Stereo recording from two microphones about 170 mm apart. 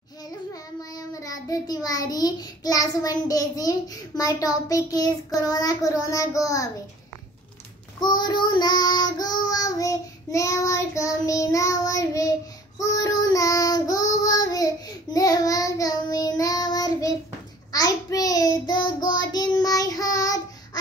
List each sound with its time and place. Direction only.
0.5 s child singing: 20° left (ahead or behind)
8.0 s child singing: 25° left (ahead or behind)